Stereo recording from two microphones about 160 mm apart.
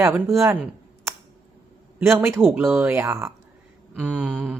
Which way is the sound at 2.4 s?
Centre (ahead or behind).